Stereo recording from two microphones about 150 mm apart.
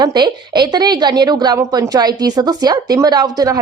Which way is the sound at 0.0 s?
30° right (ahead or behind).